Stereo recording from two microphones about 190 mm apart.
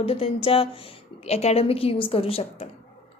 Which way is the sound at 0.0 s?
30° left (ahead or behind).